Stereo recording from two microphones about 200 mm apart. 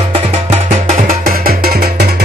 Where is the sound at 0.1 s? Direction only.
35° right (ahead or behind).